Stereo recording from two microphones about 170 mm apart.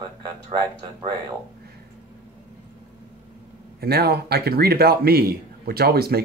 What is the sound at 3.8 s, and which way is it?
Speech, 65° right (ahead or behind).